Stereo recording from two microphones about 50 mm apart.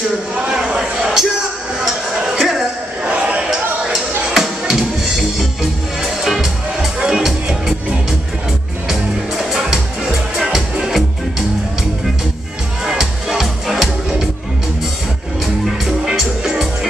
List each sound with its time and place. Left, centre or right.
0.7 s a sound: centre
1.8 s music: centre
3.2 s a sound: right
3.4 s a sound: centre
4.3 s music: centre
6.2 s music: centre
9.4 s music: centre
12.8 s music: centre
15.6 s music: centre